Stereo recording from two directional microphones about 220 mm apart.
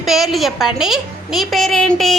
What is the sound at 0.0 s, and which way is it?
A woman's voice, centre (ahead or behind).